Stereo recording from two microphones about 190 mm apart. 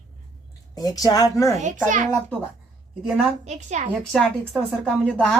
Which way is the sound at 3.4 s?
40° right (ahead or behind).